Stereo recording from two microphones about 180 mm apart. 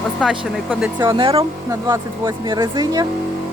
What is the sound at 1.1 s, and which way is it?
Speech, 30° right (ahead or behind).